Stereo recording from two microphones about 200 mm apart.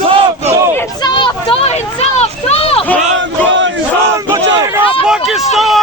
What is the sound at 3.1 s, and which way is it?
Chant, 65° right (ahead or behind).